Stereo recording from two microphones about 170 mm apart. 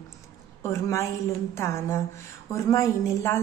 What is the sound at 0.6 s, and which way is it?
A woman's voice, 15° left (ahead or behind).